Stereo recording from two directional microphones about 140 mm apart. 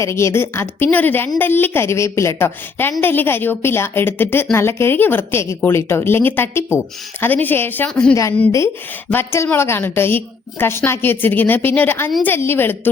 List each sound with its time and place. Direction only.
0.0 s a woman's voice: 20° left (ahead or behind)